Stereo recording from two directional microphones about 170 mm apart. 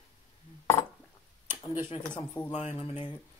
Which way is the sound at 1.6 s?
25° left (ahead or behind).